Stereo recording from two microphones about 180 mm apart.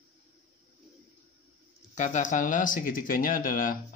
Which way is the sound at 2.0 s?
45° left (ahead or behind).